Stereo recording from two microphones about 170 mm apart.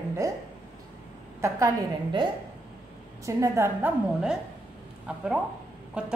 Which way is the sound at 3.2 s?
20° right (ahead or behind).